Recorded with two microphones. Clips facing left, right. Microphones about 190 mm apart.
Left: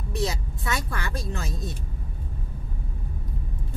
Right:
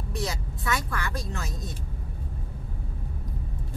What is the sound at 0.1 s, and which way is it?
Speech, 25° left (ahead or behind).